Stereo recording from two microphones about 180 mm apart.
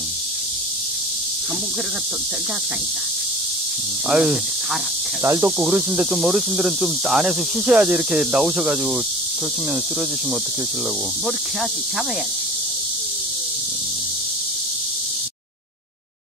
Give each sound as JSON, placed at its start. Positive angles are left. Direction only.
{"t": 4.1, "sound": "speech", "side_deg": 0}
{"t": 5.2, "sound": "speech", "side_deg": -15}